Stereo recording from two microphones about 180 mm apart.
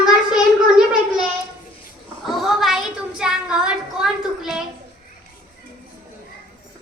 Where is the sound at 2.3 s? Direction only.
Centre (ahead or behind).